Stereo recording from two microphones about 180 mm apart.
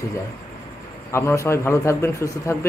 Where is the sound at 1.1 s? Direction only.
15° left (ahead or behind).